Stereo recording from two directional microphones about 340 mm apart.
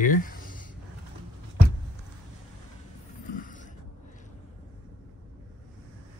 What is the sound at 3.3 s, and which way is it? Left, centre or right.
Mechanisms, left.